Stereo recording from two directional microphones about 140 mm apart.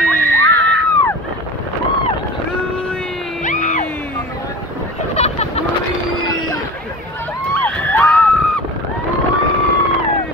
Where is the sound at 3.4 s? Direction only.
60° left (ahead or behind).